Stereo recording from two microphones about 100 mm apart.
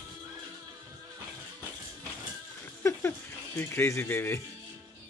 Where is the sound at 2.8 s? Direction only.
25° left (ahead or behind).